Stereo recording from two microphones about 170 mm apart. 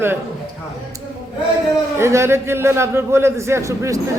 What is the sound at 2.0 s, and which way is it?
A man's voice, 15° right (ahead or behind).